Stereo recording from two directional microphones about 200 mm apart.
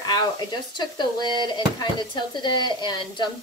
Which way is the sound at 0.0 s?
20° left (ahead or behind).